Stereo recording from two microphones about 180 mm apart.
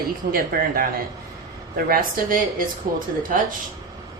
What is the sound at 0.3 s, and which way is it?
Speech, 55° right (ahead or behind).